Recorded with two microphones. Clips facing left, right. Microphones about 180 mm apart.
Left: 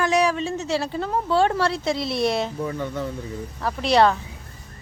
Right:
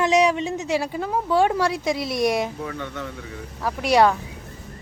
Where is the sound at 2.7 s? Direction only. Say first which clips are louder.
Left 4 dB; 35° left (ahead or behind).